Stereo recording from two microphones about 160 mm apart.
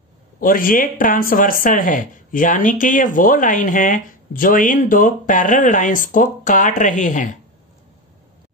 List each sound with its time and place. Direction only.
0.4 s speech: 60° left (ahead or behind)